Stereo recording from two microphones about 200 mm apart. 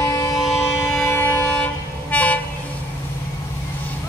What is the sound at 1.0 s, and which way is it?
Vehicle, 10° left (ahead or behind).